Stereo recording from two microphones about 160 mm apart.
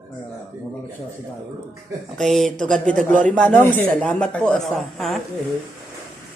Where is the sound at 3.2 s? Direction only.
55° right (ahead or behind).